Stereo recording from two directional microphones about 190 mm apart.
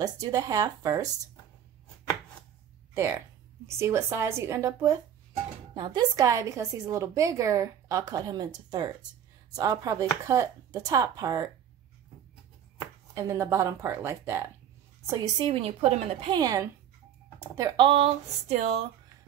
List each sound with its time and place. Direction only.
0.0 s speech: 20° right (ahead or behind)
2.9 s a woman's voice: 15° right (ahead or behind)
13.1 s a woman's voice: 15° right (ahead or behind); by 18.9 s 30° right (ahead or behind)